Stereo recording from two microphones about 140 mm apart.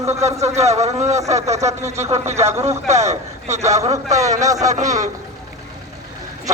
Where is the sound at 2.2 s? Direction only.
50° right (ahead or behind).